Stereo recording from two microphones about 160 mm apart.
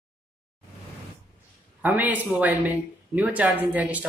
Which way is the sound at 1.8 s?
10° right (ahead or behind).